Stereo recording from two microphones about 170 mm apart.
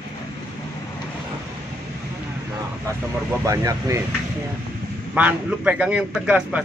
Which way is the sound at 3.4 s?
20° right (ahead or behind).